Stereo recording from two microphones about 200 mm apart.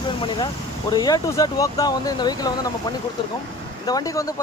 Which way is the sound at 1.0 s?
20° left (ahead or behind).